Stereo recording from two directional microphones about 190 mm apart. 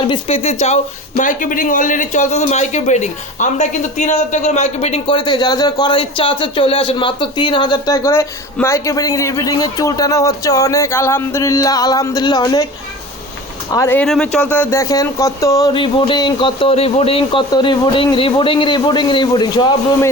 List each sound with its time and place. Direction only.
0.1 s a man's voice: 30° left (ahead or behind)
13.7 s a man's voice: 10° left (ahead or behind)